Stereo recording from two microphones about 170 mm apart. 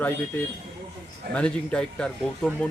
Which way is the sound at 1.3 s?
5° left (ahead or behind).